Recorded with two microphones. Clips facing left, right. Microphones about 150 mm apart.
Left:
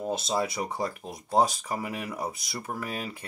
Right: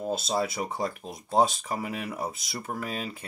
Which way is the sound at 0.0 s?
15° left (ahead or behind).